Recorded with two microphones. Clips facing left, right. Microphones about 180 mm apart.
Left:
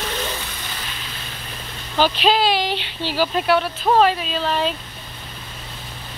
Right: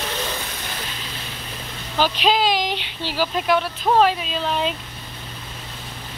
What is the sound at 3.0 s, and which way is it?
Speech, 10° left (ahead or behind).